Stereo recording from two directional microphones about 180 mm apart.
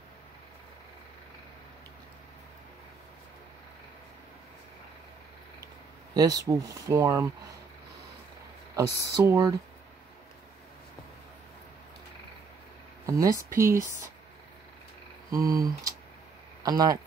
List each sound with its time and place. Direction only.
6.1 s speech: 20° right (ahead or behind)
8.7 s speech: 20° right (ahead or behind)
13.0 s speech: 20° right (ahead or behind)
15.3 s speech: 20° right (ahead or behind)